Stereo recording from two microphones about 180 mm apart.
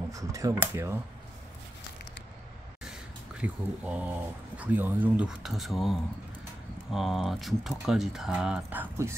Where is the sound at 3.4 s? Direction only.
5° right (ahead or behind).